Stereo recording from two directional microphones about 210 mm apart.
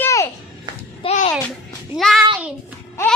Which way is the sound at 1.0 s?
35° left (ahead or behind).